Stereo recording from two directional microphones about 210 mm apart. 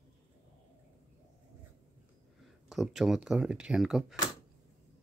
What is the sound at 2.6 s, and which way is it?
Speech, centre (ahead or behind).